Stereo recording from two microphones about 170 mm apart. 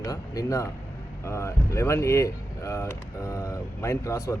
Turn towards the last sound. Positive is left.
turn(degrees=15)  # may be behind; listen again after turning